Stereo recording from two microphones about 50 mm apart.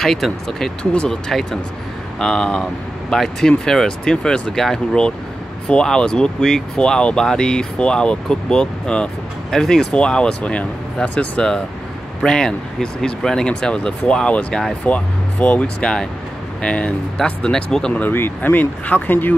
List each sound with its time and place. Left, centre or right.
0.0 s speech: centre; by 10.7 s left
11.1 s speech: centre
15.8 s speech: centre
17.9 s speech: left